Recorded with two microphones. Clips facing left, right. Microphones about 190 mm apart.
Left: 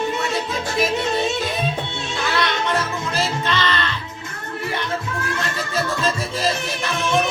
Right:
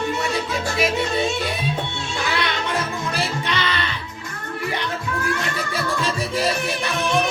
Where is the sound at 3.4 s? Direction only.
10° right (ahead or behind).